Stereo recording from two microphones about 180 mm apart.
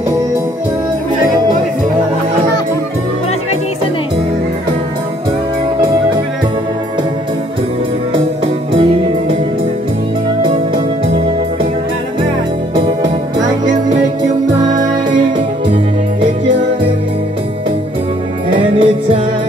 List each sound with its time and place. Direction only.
13.4 s music: 25° right (ahead or behind)
18.5 s music: 30° right (ahead or behind)